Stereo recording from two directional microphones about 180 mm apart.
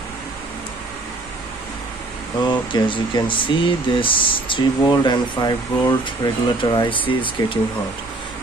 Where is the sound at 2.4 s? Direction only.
25° left (ahead or behind).